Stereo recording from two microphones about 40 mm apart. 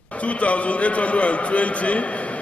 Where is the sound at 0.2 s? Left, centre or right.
Left.